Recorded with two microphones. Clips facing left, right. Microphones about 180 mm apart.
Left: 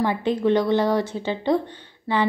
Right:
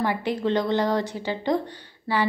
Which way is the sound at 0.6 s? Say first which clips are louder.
Left 3 dB; 20° right (ahead or behind).